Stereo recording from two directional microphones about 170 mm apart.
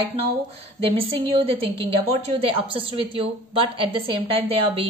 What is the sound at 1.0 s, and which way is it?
A woman's voice, 35° right (ahead or behind).